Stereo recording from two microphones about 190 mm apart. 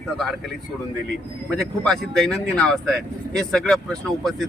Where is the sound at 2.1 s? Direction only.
Centre (ahead or behind).